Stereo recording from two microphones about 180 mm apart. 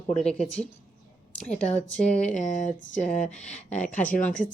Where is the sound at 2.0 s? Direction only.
40° left (ahead or behind).